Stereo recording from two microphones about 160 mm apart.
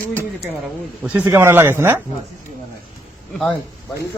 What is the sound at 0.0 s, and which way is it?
Speech, 10° left (ahead or behind).